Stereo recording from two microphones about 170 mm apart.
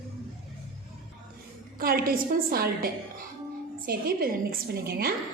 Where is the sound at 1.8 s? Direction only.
60° right (ahead or behind).